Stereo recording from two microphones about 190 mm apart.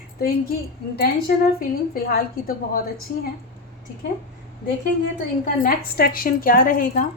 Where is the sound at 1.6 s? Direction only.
50° left (ahead or behind).